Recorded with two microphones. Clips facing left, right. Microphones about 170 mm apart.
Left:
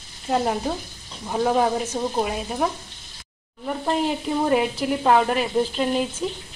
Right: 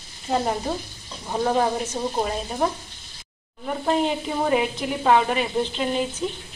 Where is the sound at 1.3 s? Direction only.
5° left (ahead or behind).